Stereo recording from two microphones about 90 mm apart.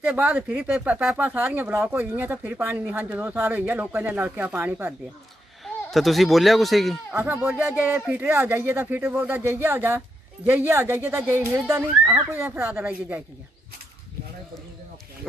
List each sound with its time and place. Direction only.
0.0 s speech: 15° right (ahead or behind)
5.9 s speech: centre (ahead or behind)
7.1 s speech: 25° right (ahead or behind)